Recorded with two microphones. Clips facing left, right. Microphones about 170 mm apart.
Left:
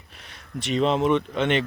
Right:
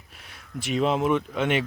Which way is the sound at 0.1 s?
5° right (ahead or behind).